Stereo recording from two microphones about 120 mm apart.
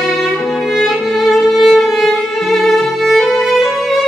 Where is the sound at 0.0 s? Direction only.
Centre (ahead or behind).